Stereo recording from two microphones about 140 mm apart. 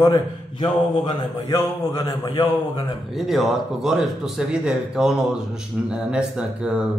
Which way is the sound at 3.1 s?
Centre (ahead or behind).